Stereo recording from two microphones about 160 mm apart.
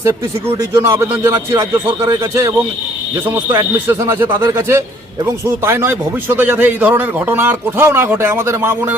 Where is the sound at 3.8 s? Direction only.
15° right (ahead or behind).